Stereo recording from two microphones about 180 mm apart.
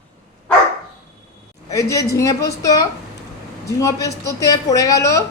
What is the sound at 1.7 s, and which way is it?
A woman's voice, 15° left (ahead or behind).